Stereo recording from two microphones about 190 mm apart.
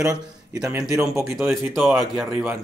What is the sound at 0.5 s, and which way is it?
Speech, 15° right (ahead or behind).